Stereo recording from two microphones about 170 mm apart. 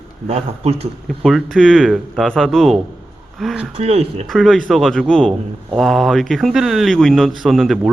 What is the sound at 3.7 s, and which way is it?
Speech, 35° right (ahead or behind).